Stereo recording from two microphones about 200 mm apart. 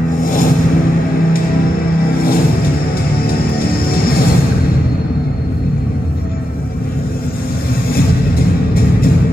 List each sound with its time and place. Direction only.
0.2 s vehicle: 45° left (ahead or behind)
3.3 s music: 50° left (ahead or behind)